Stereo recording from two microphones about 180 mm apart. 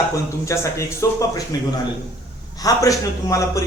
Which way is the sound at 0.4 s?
15° left (ahead or behind).